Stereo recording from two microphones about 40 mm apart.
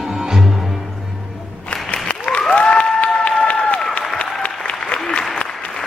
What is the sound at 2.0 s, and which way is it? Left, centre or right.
Applause, left.